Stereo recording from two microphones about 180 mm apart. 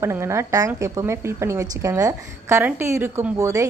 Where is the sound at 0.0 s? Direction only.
15° right (ahead or behind).